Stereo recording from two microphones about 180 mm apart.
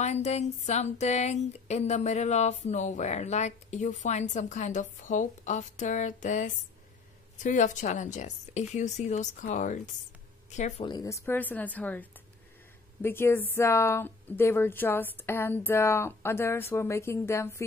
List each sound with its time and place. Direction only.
0.0 s a woman's voice: 40° left (ahead or behind)
10.9 s speech: 20° left (ahead or behind)